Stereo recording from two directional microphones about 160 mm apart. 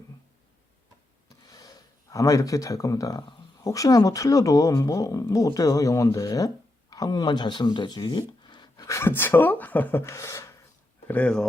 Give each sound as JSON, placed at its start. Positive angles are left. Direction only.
{"t": 1.3, "sound": "speech", "side_deg": 25}
{"t": 11.1, "sound": "speech", "side_deg": 5}